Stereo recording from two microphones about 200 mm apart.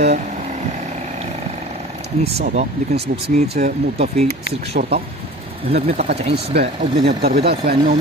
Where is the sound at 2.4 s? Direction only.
35° right (ahead or behind).